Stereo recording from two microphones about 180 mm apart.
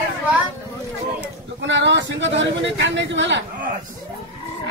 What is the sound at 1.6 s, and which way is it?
Speech, 90° right.